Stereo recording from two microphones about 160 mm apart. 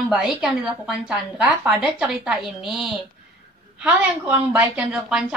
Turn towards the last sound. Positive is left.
turn(degrees=-10)  # may be behind; listen again after turning